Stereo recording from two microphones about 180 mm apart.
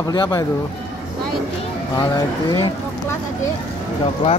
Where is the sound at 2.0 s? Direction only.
25° left (ahead or behind).